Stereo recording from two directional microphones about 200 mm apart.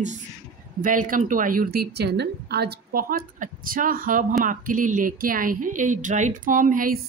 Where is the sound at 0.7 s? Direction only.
45° right (ahead or behind).